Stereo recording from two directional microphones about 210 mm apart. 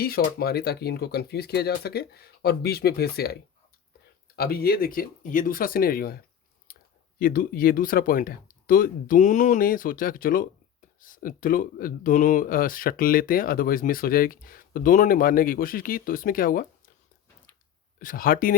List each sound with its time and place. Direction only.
0.0 s speech: 45° left (ahead or behind)
4.4 s speech: 45° left (ahead or behind)
6.7 s a sound: 45° left (ahead or behind)
7.2 s speech: 45° left (ahead or behind)
18.0 s speech: 40° left (ahead or behind)